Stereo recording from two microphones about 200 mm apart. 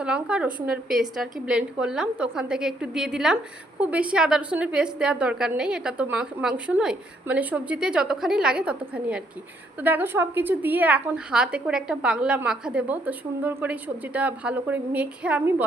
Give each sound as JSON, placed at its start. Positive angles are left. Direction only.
{"t": 0.0, "sound": "a woman's voice", "side_deg": -5}